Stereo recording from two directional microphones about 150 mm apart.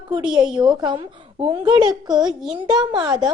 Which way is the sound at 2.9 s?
30° right (ahead or behind).